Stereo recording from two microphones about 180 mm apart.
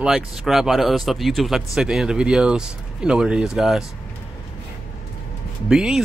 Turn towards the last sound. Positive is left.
turn(degrees=-5)  # may be behind; listen again after turning